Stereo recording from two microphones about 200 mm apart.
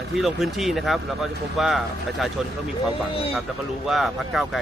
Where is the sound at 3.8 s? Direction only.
Centre (ahead or behind).